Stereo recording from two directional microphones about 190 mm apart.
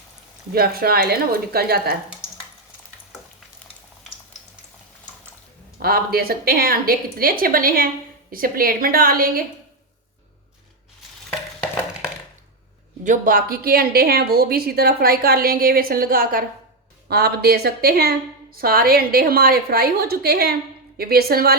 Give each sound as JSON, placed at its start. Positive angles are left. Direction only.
{"t": 0.5, "sound": "a woman's voice", "side_deg": -55}
{"t": 5.8, "sound": "a woman's voice", "side_deg": -55}
{"t": 13.1, "sound": "a woman's voice", "side_deg": -45}